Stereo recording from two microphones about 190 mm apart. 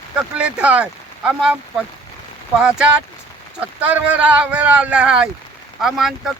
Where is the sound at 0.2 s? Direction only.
5° right (ahead or behind).